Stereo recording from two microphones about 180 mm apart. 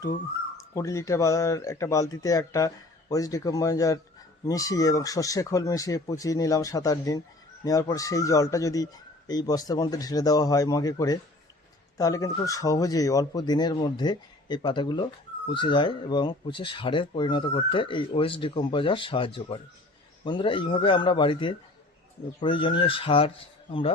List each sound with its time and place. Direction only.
0.7 s speech: 15° left (ahead or behind)